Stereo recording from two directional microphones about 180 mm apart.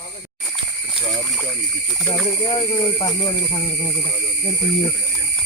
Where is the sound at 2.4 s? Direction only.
30° left (ahead or behind).